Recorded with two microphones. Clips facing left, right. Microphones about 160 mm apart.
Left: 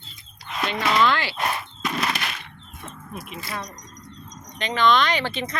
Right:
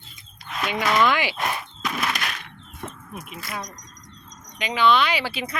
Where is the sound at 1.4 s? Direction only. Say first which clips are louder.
Left 1 dB; centre (ahead or behind).